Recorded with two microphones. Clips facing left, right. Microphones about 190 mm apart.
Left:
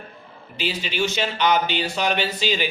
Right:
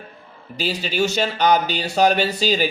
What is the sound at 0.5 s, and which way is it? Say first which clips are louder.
Speech: right 3 dB; 40° right (ahead or behind).